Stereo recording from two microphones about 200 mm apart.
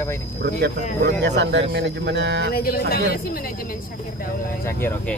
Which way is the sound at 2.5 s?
50° left (ahead or behind).